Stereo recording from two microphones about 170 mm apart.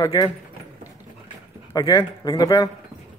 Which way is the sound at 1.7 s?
20° left (ahead or behind).